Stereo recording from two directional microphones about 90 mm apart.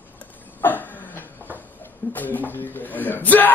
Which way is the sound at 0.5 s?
20° left (ahead or behind).